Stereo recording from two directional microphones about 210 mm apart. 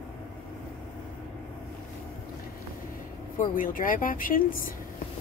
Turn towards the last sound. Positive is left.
turn(degrees=40)  # may be behind; listen again after turning